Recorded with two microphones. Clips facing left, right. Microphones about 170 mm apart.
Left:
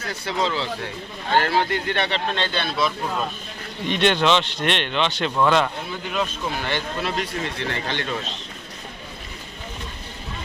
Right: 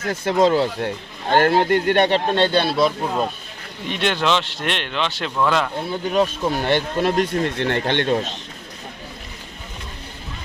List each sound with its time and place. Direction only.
0.0 s speech: 50° right (ahead or behind)
3.8 s speech: 5° right (ahead or behind)
5.9 s speech: 35° right (ahead or behind)
6.7 s speech: 50° right (ahead or behind)